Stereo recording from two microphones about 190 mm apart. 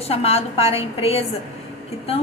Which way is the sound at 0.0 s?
30° left (ahead or behind).